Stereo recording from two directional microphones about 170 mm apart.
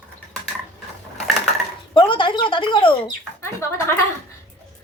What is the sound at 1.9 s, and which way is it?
Speech, 30° left (ahead or behind).